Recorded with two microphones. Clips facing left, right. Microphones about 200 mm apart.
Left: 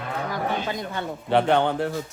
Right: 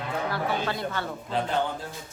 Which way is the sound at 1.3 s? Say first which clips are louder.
Left 9 dB; 70° left (ahead or behind).